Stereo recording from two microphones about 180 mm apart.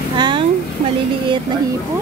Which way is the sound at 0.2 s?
25° right (ahead or behind).